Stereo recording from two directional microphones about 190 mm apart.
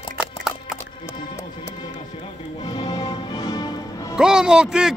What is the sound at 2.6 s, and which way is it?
Music, 20° left (ahead or behind).